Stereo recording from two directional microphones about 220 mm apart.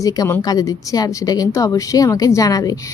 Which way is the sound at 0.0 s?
15° left (ahead or behind).